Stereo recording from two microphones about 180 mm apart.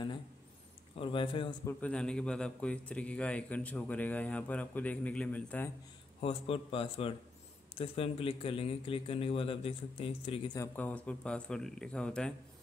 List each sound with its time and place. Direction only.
0.9 s a man's voice: 30° left (ahead or behind)
1.7 s a man's voice: 5° left (ahead or behind)
6.2 s speech: 30° left (ahead or behind)
10.6 s speech: 10° left (ahead or behind)